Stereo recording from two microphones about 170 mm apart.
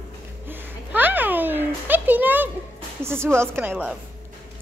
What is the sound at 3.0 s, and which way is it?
Speech, 15° right (ahead or behind).